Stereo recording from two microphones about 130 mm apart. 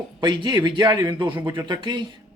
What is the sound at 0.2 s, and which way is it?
Speech, 35° right (ahead or behind).